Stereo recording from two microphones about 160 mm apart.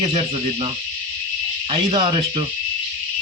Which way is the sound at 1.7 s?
35° right (ahead or behind).